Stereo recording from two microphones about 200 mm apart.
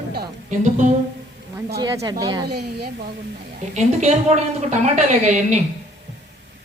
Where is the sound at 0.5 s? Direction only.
35° right (ahead or behind).